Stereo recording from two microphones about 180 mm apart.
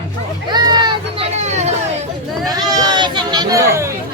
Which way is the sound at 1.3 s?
40° right (ahead or behind).